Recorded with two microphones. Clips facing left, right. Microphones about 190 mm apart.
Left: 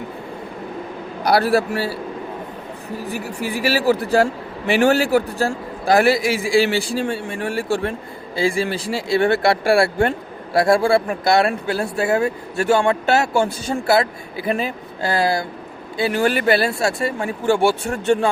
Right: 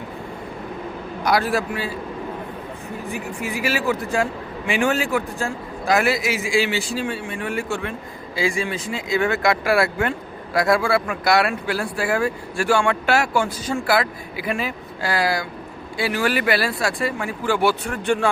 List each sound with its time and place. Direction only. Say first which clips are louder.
1.2 s a man's voice: left 4 dB; 35° left (ahead or behind)
3.3 s speech: left 4 dB; 35° left (ahead or behind)